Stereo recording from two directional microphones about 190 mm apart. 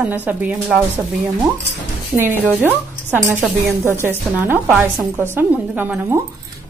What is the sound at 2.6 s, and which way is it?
A woman's voice, 10° right (ahead or behind).